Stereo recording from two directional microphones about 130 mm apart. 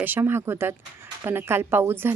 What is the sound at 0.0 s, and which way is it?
Speech, 15° right (ahead or behind).